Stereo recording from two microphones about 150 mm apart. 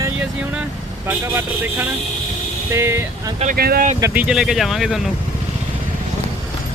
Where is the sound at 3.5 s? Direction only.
85° right.